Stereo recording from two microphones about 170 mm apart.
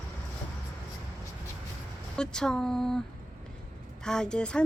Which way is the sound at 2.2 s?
5° left (ahead or behind).